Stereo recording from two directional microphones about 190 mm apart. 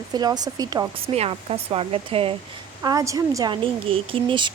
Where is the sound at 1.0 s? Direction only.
30° right (ahead or behind).